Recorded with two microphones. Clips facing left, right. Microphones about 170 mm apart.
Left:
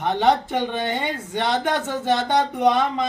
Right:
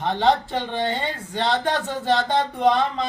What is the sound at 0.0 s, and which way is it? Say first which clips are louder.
Speech: left 1 dB; 20° left (ahead or behind).